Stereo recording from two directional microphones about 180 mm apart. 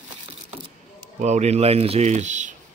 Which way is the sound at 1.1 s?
40° right (ahead or behind).